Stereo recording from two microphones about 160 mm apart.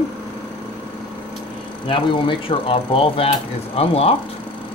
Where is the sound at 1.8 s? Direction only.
35° left (ahead or behind).